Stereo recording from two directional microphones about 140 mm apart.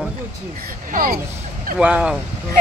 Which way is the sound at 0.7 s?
90° right.